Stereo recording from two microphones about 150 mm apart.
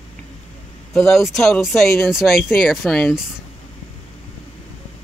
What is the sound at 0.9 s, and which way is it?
Speech, centre (ahead or behind).